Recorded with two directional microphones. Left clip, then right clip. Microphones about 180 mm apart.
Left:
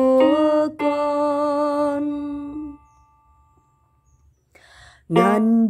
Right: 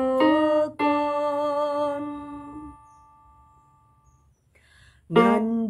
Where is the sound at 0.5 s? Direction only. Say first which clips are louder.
Left 3 dB; 30° left (ahead or behind).